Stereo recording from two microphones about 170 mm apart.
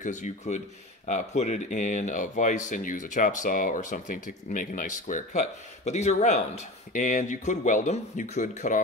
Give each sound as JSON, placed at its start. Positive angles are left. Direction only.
{"t": 0.0, "sound": "speech", "side_deg": 45}